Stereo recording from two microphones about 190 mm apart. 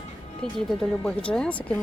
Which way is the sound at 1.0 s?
5° left (ahead or behind).